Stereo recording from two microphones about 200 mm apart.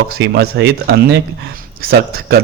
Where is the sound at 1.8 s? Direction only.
50° right (ahead or behind).